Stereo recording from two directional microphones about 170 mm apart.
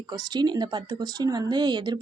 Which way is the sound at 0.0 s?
25° right (ahead or behind).